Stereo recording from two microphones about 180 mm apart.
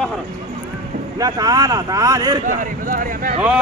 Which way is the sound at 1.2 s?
20° right (ahead or behind).